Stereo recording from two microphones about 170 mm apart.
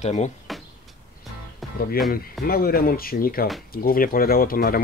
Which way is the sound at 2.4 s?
60° left (ahead or behind).